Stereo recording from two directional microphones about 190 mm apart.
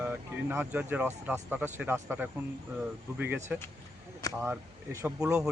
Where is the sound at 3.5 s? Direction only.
10° right (ahead or behind).